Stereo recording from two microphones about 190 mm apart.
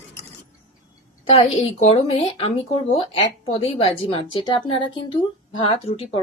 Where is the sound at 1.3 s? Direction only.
30° left (ahead or behind).